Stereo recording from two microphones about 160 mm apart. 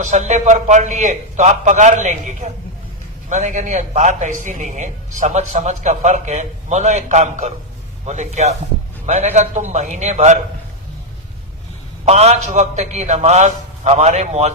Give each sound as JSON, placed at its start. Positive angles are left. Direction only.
{"t": 0.0, "sound": "a man's voice", "side_deg": -50}
{"t": 12.0, "sound": "a man's voice", "side_deg": -40}